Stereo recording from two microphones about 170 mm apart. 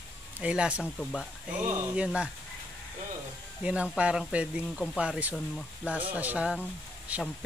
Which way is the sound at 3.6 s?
5° right (ahead or behind).